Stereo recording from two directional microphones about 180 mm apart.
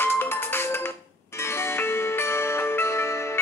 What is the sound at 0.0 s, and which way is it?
Music, 10° left (ahead or behind).